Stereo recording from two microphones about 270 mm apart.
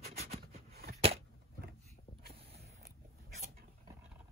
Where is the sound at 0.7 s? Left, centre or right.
Right.